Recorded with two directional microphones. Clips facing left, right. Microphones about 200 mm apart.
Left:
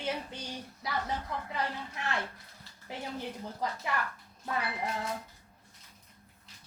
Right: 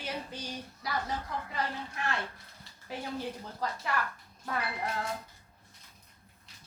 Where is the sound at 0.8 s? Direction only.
25° left (ahead or behind).